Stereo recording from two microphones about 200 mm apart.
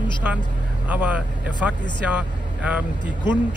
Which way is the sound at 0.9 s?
10° right (ahead or behind).